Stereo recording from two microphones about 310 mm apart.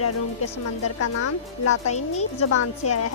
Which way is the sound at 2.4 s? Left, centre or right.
Left.